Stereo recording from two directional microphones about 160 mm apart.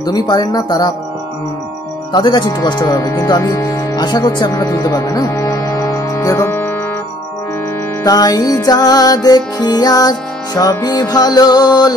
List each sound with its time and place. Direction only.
0.0 s music: 25° left (ahead or behind)
2.1 s speech: 25° left (ahead or behind)
8.0 s music: 25° left (ahead or behind)